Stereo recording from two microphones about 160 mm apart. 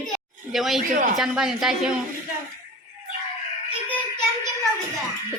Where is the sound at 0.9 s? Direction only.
55° right (ahead or behind).